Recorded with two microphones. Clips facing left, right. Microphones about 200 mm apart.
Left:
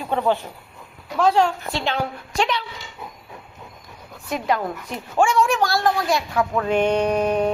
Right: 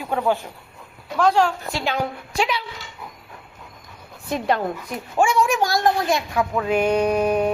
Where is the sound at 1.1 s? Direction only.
Centre (ahead or behind).